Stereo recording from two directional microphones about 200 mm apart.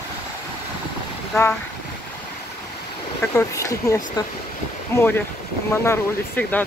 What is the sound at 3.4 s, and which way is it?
Speech, 15° left (ahead or behind).